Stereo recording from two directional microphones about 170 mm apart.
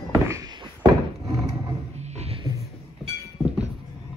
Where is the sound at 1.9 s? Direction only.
40° right (ahead or behind).